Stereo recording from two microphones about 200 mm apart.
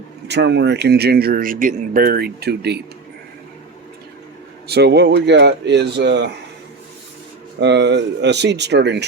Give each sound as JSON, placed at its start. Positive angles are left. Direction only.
{"t": 0.3, "sound": "speech", "side_deg": -55}
{"t": 4.7, "sound": "speech", "side_deg": -55}
{"t": 7.6, "sound": "speech", "side_deg": -60}